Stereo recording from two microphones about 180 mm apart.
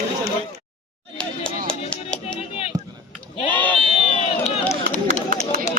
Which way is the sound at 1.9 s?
5° left (ahead or behind).